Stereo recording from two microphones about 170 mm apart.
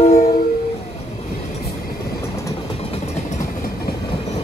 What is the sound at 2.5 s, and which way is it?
Train, 35° left (ahead or behind).